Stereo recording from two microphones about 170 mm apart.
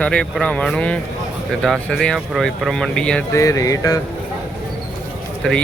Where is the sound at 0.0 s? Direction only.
5° left (ahead or behind).